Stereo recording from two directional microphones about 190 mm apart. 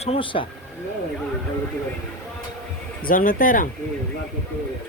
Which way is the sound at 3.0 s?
45° left (ahead or behind).